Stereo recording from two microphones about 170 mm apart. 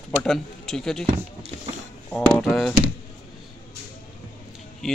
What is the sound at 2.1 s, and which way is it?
Speech, centre (ahead or behind).